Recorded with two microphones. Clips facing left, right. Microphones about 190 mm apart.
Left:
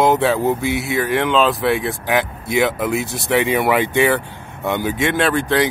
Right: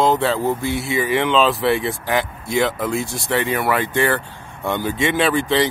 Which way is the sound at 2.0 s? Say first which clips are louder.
Left 2 dB; 15° left (ahead or behind).